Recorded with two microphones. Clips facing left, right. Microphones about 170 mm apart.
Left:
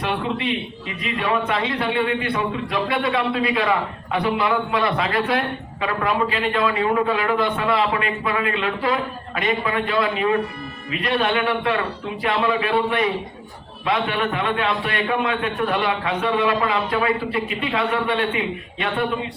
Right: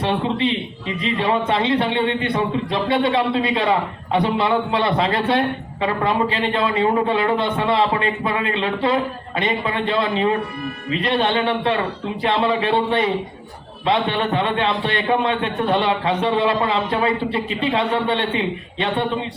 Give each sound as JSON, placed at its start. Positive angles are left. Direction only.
{"t": 0.0, "sound": "a man's voice", "side_deg": -30}